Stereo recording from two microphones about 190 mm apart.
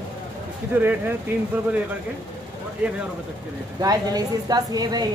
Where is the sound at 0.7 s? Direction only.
10° right (ahead or behind).